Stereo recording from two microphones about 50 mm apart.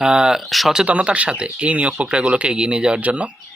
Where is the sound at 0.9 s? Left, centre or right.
Right.